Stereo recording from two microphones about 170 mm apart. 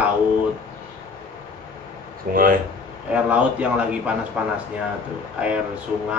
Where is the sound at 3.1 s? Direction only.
10° right (ahead or behind).